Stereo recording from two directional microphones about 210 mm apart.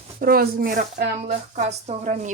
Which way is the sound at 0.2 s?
45° right (ahead or behind).